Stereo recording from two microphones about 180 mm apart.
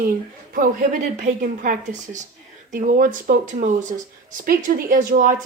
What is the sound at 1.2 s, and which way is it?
Speech, 50° right (ahead or behind).